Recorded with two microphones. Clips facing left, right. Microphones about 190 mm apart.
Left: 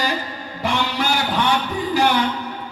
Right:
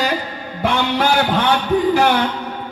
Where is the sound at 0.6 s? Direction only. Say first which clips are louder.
Right 5 dB; 60° right (ahead or behind).